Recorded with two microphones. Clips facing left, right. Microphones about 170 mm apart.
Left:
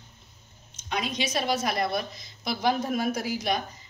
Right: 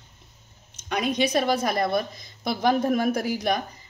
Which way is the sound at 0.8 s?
60° right (ahead or behind).